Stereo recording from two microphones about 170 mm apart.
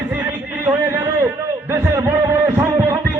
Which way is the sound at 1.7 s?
15° right (ahead or behind).